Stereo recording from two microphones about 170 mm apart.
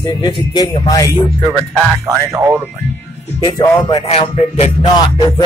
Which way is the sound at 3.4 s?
25° left (ahead or behind).